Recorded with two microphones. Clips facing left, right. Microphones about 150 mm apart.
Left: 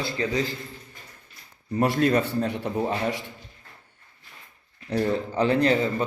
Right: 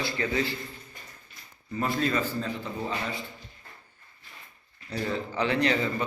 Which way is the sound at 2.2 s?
65° left (ahead or behind).